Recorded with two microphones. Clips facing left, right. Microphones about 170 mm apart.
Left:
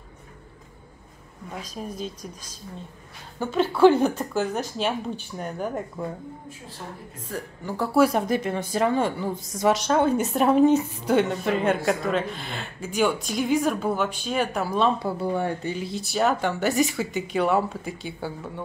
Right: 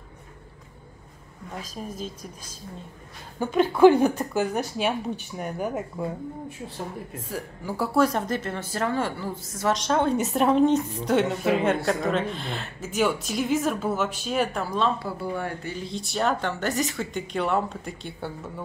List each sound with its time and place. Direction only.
1.5 s a woman's voice: centre (ahead or behind)
3.3 s speech: 15° right (ahead or behind)
7.2 s speech: 10° right (ahead or behind)
7.9 s a woman's voice: 10° left (ahead or behind)
9.8 s a woman's voice: 5° left (ahead or behind)
15.1 s speech: 20° left (ahead or behind)
15.9 s a woman's voice: 5° left (ahead or behind)